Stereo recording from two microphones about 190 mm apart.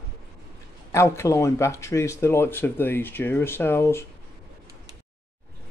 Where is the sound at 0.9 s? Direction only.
15° left (ahead or behind).